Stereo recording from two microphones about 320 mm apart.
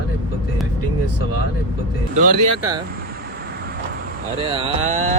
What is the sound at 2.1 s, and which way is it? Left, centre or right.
Mantra, right.